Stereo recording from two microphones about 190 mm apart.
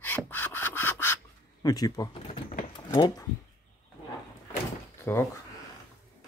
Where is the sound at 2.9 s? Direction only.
20° left (ahead or behind).